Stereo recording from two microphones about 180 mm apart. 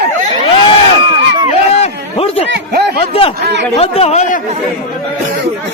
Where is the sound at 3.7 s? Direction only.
35° left (ahead or behind).